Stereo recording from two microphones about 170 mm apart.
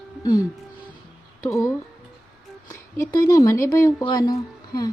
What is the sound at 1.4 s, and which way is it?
Speech, 20° left (ahead or behind).